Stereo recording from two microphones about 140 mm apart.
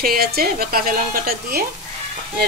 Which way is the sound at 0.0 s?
90° right.